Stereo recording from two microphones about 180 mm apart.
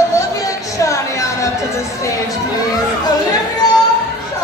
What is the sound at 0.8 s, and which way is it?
Music, 15° left (ahead or behind).